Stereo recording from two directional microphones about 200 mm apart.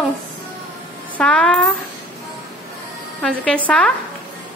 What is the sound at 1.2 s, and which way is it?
Speech, 5° left (ahead or behind).